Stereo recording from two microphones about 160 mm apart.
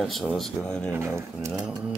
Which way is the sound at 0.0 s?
Centre (ahead or behind).